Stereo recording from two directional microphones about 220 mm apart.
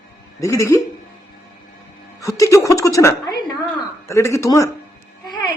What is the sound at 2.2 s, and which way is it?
Speech, 15° left (ahead or behind).